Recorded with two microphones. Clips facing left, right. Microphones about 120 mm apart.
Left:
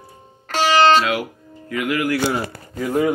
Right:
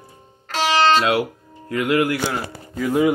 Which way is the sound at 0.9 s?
35° right (ahead or behind).